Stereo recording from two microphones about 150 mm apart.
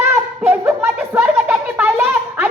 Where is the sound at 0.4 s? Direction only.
10° right (ahead or behind).